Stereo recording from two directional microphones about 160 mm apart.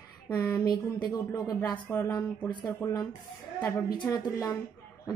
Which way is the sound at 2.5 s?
30° left (ahead or behind).